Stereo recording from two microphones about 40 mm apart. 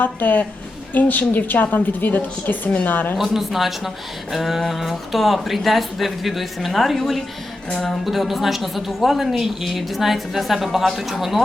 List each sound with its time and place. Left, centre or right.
0.0 s a woman's voice: left
3.2 s speech: centre
7.7 s speech: centre
8.0 s speech: centre